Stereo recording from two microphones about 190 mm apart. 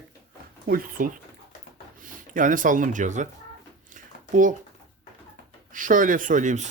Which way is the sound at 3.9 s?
40° right (ahead or behind).